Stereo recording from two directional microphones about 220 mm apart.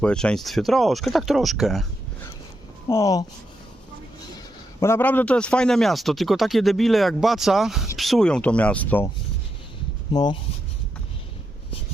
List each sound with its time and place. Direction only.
0.0 s speech: 5° left (ahead or behind)
2.9 s speech: 15° left (ahead or behind)
4.8 s speech: 10° left (ahead or behind)
10.1 s speech: 20° left (ahead or behind)